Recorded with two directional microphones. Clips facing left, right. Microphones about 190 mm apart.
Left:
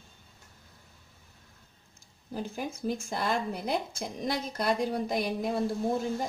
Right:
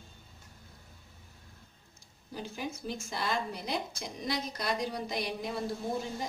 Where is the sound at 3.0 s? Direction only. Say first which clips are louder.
Even; 50° left (ahead or behind).